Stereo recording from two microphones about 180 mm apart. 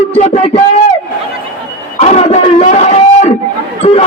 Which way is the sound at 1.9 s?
35° left (ahead or behind).